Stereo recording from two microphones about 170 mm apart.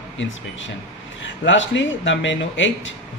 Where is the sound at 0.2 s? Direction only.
90° left.